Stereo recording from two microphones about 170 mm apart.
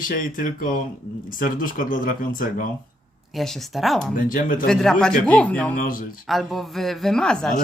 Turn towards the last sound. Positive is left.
turn(degrees=5)  # may be behind; listen again after turning